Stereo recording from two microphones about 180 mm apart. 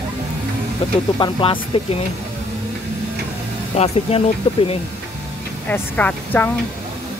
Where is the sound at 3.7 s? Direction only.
35° left (ahead or behind).